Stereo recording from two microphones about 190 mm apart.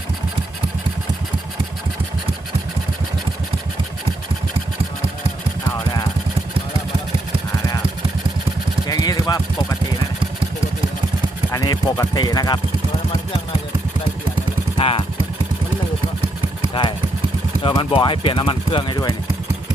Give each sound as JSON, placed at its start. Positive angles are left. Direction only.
{"t": 8.9, "sound": "a sound", "side_deg": 20}
{"t": 11.5, "sound": "speech", "side_deg": 20}
{"t": 14.8, "sound": "speech", "side_deg": 30}
{"t": 17.6, "sound": "speech", "side_deg": 25}